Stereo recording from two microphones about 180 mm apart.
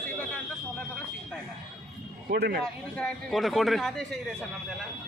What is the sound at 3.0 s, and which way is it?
A man's voice, 5° left (ahead or behind).